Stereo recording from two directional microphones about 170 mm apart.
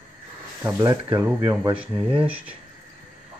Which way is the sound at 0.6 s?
20° right (ahead or behind).